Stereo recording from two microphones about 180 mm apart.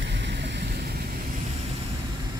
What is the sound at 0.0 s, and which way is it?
Vehicle, 85° right.